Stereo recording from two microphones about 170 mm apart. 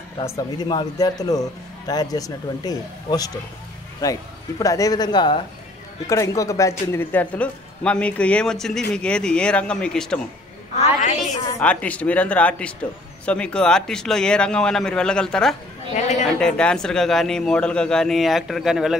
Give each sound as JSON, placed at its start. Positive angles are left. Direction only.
{"t": 0.2, "sound": "a man's voice", "side_deg": 20}
{"t": 10.8, "sound": "a woman's voice", "side_deg": 40}
{"t": 11.6, "sound": "a man's voice", "side_deg": 10}
{"t": 15.9, "sound": "a woman's voice", "side_deg": 40}
{"t": 16.3, "sound": "a man's voice", "side_deg": 5}